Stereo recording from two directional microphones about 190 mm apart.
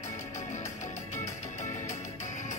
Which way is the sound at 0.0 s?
15° left (ahead or behind).